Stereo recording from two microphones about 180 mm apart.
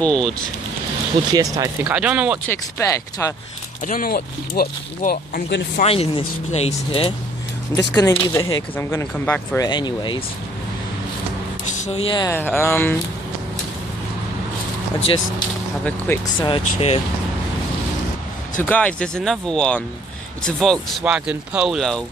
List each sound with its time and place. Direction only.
0.0 s speech: 5° left (ahead or behind)
1.3 s speech: 20° right (ahead or behind)
2.4 s speech: 15° left (ahead or behind)
3.8 s speech: 50° left (ahead or behind)
5.8 s speech: 30° left (ahead or behind)
7.9 s speech: 20° left (ahead or behind)
9.7 s speech: 25° left (ahead or behind)
11.8 s speech: 35° left (ahead or behind)
12.3 s speech: 10° left (ahead or behind)
16.3 s speech: 30° left (ahead or behind)
18.6 s speech: 10° left (ahead or behind)